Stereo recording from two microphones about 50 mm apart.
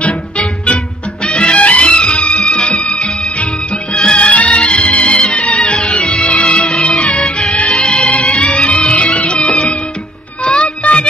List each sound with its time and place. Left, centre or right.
1.2 s music: left
4.3 s music: left